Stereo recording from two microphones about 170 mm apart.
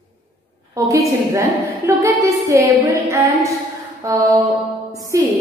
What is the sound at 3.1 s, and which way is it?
A woman's voice, 20° right (ahead or behind).